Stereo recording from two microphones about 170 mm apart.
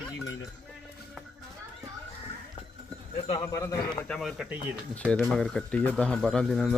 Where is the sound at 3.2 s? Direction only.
30° left (ahead or behind).